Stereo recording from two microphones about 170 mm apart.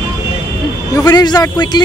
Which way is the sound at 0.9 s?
20° left (ahead or behind).